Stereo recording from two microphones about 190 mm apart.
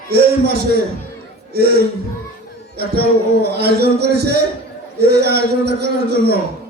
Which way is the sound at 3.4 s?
60° right (ahead or behind).